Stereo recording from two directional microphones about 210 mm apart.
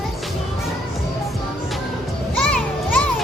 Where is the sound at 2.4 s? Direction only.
5° left (ahead or behind).